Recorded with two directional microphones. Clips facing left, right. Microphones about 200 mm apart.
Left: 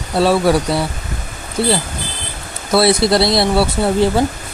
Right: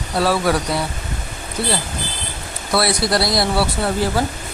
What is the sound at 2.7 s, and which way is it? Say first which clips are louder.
Speech: left 6 dB; 25° left (ahead or behind).